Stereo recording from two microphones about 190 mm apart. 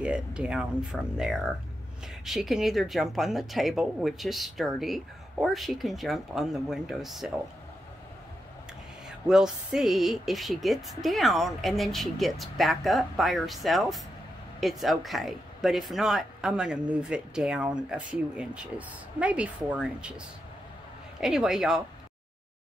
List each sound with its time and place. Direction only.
0.0 s speech: 5° right (ahead or behind)
9.3 s speech: 5° right (ahead or behind)
21.2 s speech: centre (ahead or behind)